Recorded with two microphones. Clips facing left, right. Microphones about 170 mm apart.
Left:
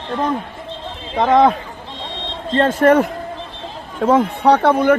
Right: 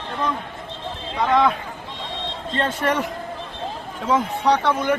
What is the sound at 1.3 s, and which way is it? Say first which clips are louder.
Speech: left 6 dB; 40° left (ahead or behind).